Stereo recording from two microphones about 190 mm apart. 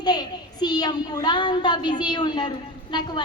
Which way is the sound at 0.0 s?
20° left (ahead or behind).